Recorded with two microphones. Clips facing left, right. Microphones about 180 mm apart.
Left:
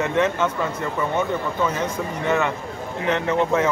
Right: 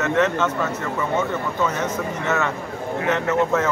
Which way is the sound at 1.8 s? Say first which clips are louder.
Even; 15° left (ahead or behind).